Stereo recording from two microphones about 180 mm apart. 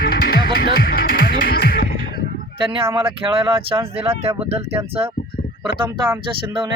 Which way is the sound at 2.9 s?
30° right (ahead or behind).